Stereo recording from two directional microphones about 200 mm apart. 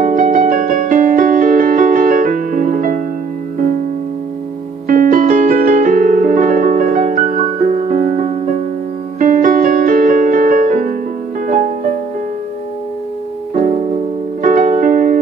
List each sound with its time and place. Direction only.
0.0 s music: 40° right (ahead or behind)
4.8 s music: 40° right (ahead or behind)
13.6 s music: 40° right (ahead or behind)